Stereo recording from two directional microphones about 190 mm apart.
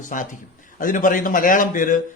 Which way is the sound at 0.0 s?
45° left (ahead or behind).